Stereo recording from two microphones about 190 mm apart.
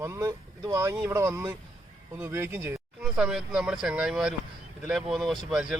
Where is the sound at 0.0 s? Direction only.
15° right (ahead or behind).